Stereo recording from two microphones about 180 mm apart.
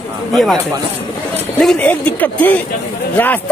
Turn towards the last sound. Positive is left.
turn(degrees=10)  # may be behind; listen again after turning